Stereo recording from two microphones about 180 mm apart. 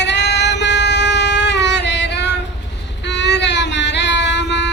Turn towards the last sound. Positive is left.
turn(degrees=75)  # may be behind; listen again after turning